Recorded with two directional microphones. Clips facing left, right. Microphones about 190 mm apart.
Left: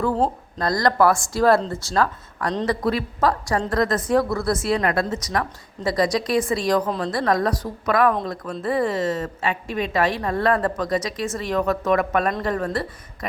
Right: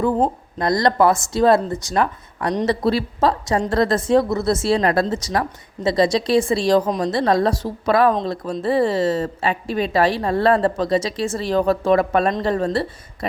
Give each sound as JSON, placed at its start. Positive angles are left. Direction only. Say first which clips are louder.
{"t": 0.6, "sound": "a woman's voice", "louder": "right 2 dB", "side_deg": -20}